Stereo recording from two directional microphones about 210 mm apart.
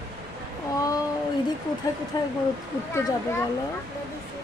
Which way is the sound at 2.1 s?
20° left (ahead or behind).